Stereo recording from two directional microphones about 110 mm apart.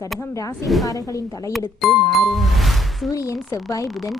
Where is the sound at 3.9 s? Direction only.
Centre (ahead or behind).